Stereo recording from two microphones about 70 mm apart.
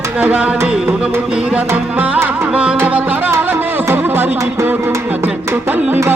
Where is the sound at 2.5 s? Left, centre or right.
Centre.